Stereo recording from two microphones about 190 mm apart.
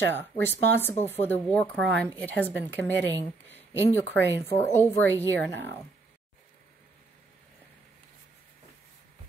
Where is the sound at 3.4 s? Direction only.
10° left (ahead or behind).